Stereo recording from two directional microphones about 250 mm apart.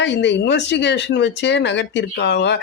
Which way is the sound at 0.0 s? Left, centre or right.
Left.